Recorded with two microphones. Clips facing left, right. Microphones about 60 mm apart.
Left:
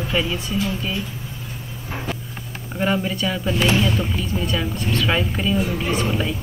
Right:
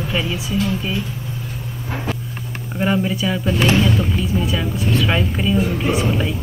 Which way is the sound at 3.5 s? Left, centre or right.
Right.